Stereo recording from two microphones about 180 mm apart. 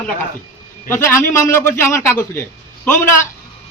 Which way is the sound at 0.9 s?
15° left (ahead or behind).